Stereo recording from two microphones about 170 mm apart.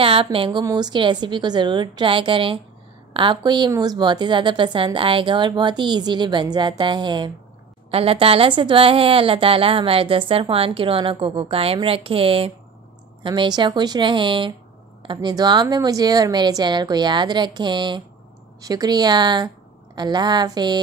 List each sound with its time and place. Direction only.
0.0 s a woman's voice: 30° right (ahead or behind)